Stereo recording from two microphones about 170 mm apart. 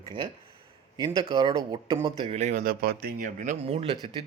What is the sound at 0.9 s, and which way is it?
Speech, 25° right (ahead or behind).